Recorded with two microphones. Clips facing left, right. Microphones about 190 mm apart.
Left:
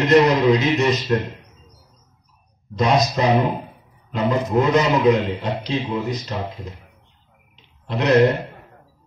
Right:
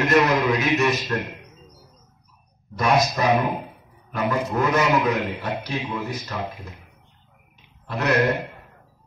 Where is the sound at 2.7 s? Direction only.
20° left (ahead or behind).